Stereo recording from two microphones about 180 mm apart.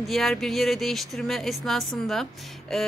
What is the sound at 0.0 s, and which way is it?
A woman's voice, centre (ahead or behind).